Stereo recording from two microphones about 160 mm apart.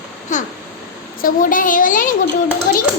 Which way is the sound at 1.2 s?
60° left (ahead or behind).